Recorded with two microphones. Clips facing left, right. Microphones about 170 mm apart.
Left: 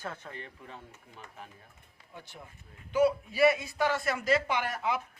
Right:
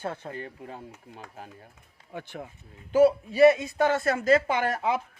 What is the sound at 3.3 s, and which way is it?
Speech, 25° right (ahead or behind).